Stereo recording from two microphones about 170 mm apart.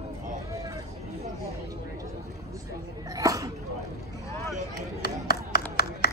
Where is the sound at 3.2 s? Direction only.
20° right (ahead or behind).